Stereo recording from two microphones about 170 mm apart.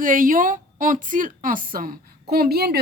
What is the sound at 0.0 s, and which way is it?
A woman's voice, 55° right (ahead or behind).